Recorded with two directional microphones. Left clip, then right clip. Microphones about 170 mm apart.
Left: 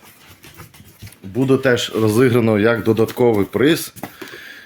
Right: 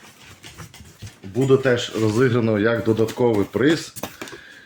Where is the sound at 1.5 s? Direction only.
90° left; by 3.9 s 60° left (ahead or behind).